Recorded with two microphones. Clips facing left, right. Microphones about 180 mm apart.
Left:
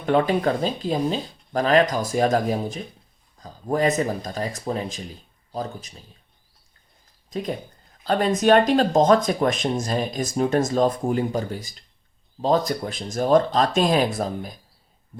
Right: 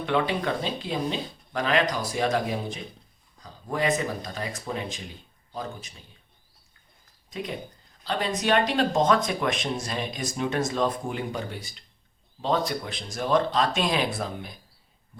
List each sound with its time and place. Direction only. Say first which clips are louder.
0.0 s speech: left 6 dB; 40° left (ahead or behind)
7.3 s speech: left 5 dB; 40° left (ahead or behind)